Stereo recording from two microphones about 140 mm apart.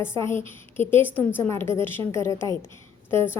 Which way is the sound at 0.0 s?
20° left (ahead or behind).